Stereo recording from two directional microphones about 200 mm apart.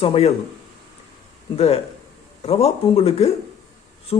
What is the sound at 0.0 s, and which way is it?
Speech, 30° left (ahead or behind).